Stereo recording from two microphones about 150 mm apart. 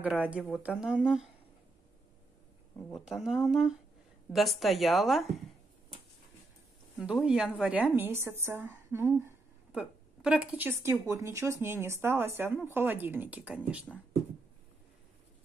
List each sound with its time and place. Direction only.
0.0 s a woman's voice: 10° right (ahead or behind)
2.9 s a woman's voice: centre (ahead or behind)
7.0 s a woman's voice: 5° right (ahead or behind)